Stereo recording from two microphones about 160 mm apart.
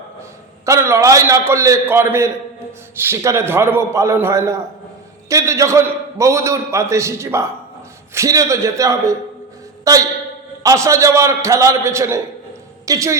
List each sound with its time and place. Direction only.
0.6 s a man's voice: 20° right (ahead or behind)